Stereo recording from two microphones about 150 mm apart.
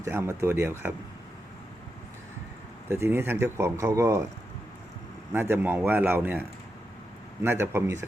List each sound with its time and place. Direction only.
0.0 s speech: 20° right (ahead or behind)
2.9 s speech: 15° right (ahead or behind)
5.3 s speech: 15° right (ahead or behind)
7.4 s speech: 15° right (ahead or behind)